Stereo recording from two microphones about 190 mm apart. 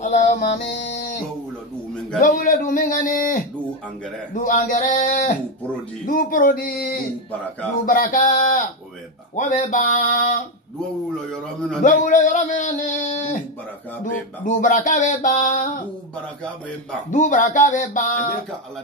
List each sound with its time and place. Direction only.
0.0 s music: 40° left (ahead or behind)
2.1 s a man's voice: 50° left (ahead or behind)
11.8 s speech: 40° left (ahead or behind)
14.4 s speech: 40° left (ahead or behind)
17.1 s speech: 45° left (ahead or behind)